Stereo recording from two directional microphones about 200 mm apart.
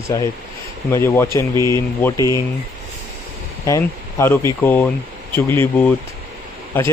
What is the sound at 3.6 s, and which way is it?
Speech, 15° left (ahead or behind).